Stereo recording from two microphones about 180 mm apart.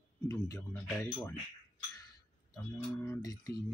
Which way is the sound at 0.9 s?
10° left (ahead or behind).